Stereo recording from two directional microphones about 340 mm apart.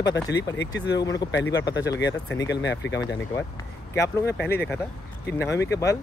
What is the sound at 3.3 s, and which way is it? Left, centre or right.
Speech, centre.